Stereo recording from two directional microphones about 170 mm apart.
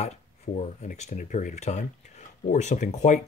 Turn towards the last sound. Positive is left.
turn(degrees=45)  # may be behind; listen again after turning